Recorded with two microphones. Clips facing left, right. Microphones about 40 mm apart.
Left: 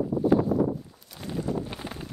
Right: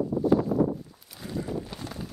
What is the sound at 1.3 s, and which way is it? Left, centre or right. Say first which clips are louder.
Wind noise: left 2 dB; left.